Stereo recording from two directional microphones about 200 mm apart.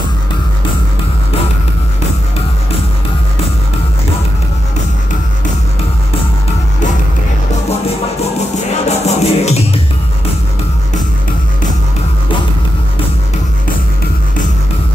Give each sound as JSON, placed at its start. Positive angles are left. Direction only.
{"t": 8.8, "sound": "music", "side_deg": 35}